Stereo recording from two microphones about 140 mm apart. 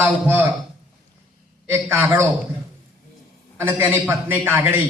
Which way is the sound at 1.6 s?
15° right (ahead or behind).